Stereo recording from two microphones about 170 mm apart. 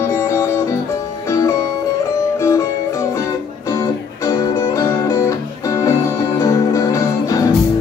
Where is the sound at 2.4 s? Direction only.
20° left (ahead or behind).